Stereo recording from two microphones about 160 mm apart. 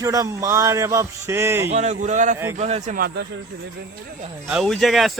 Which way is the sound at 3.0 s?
75° right (ahead or behind).